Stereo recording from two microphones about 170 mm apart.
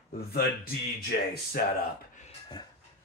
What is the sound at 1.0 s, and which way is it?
Speech, 65° left (ahead or behind).